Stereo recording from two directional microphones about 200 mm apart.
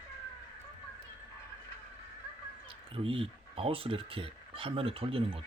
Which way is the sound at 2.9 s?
25° right (ahead or behind).